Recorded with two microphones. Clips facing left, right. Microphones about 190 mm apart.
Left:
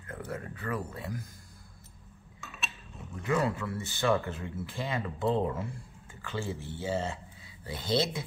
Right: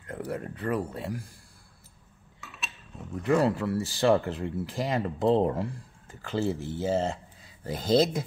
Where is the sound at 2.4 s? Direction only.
Centre (ahead or behind).